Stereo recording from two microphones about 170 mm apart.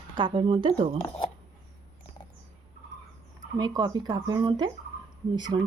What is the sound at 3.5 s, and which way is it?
Speech, 25° right (ahead or behind).